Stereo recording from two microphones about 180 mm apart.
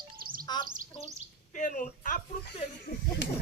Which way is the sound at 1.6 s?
45° left (ahead or behind).